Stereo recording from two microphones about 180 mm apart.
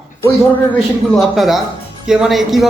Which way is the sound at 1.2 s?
Centre (ahead or behind).